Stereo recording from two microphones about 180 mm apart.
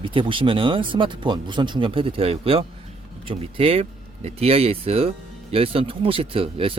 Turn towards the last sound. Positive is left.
turn(degrees=-30)  # may be behind; listen again after turning